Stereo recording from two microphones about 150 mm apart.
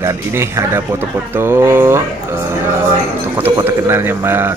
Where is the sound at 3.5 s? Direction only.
15° right (ahead or behind).